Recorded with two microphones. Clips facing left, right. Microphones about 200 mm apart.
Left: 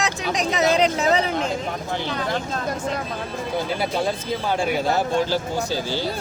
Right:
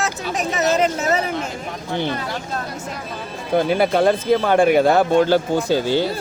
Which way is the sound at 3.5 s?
60° right (ahead or behind).